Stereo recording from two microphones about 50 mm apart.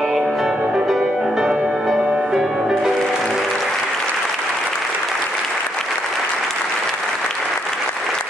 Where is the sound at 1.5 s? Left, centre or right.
Right.